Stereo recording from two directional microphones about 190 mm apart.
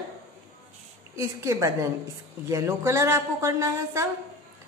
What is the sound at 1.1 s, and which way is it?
A woman's voice, 15° right (ahead or behind).